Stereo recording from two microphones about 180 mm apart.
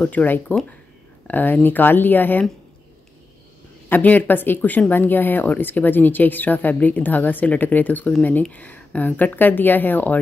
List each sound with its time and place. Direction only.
0.0 s speech: 10° left (ahead or behind)
3.9 s speech: 10° left (ahead or behind)